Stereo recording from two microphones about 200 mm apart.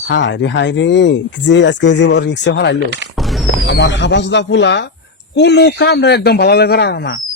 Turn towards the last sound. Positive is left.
turn(degrees=55)  # may be behind; listen again after turning